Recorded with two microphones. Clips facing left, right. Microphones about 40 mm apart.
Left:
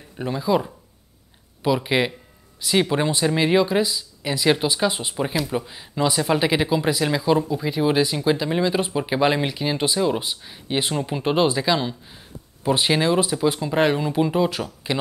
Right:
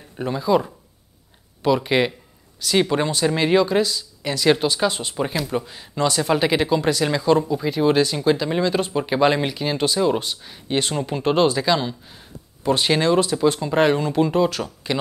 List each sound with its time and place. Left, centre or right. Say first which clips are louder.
0.2 s speech: right 2 dB; centre
5.1 s speech: even; centre
14.9 s speech: right 1 dB; centre